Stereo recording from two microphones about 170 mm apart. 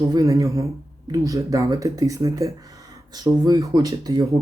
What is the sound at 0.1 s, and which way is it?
Speech, 20° right (ahead or behind).